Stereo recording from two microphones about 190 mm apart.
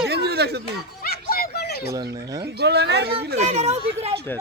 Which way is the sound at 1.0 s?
50° left (ahead or behind).